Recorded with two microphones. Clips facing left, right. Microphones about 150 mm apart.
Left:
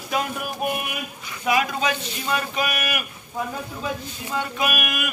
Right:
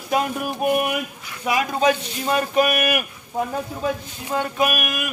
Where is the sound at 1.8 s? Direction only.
45° right (ahead or behind).